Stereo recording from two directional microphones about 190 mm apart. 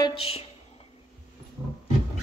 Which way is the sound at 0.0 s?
30° left (ahead or behind).